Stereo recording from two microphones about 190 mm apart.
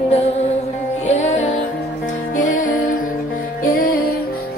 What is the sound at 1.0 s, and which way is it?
Music, 40° left (ahead or behind).